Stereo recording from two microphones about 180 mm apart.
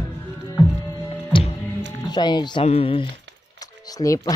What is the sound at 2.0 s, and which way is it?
Speech, 25° left (ahead or behind).